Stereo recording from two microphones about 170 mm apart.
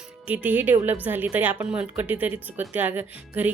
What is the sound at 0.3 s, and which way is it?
Speech, 10° right (ahead or behind).